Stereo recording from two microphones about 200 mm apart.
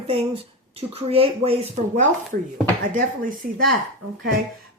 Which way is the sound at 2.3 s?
45° right (ahead or behind).